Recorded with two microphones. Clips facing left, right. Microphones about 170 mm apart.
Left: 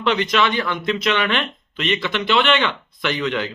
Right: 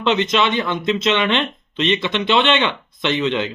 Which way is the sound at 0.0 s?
25° right (ahead or behind).